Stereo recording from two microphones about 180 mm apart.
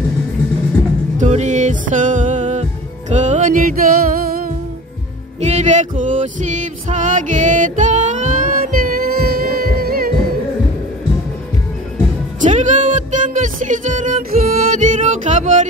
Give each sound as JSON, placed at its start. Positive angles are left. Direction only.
{"t": 1.1, "sound": "music", "side_deg": -40}
{"t": 5.4, "sound": "music", "side_deg": -40}
{"t": 12.4, "sound": "music", "side_deg": -45}